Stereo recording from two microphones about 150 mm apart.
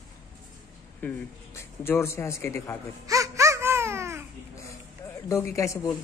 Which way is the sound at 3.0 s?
20° right (ahead or behind).